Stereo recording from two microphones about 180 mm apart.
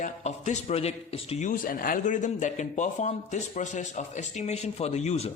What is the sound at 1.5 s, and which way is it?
Speech, 50° left (ahead or behind).